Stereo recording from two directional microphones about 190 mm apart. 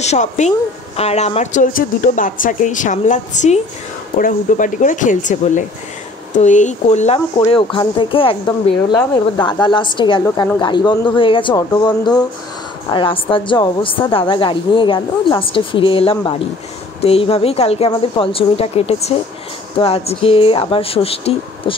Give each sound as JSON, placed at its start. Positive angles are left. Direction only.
{"t": 0.0, "sound": "a woman's voice", "side_deg": 35}